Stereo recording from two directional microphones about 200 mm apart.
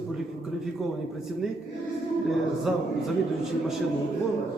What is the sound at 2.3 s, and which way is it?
Speech, centre (ahead or behind).